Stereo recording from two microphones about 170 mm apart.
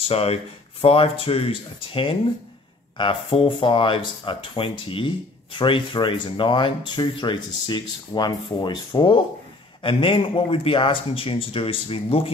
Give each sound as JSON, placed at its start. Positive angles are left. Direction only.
{"t": 0.1, "sound": "speech", "side_deg": 35}